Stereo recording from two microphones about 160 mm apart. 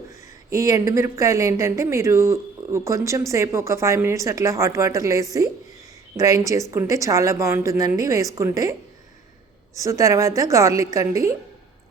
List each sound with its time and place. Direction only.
0.5 s speech: 20° right (ahead or behind)
9.7 s speech: 20° right (ahead or behind)